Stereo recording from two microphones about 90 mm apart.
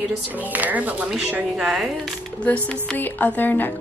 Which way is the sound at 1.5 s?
5° right (ahead or behind).